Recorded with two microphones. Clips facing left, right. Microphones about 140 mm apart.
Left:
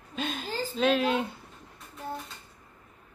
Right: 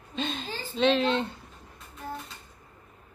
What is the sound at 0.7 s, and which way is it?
Speech, 5° left (ahead or behind).